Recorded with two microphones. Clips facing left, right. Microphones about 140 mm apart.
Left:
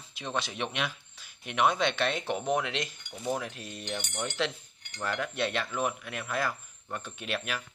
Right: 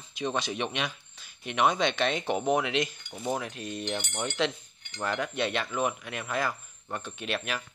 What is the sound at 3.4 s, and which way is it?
Speech, centre (ahead or behind).